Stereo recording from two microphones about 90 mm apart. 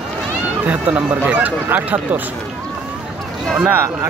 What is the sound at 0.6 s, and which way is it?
Speech, 20° right (ahead or behind).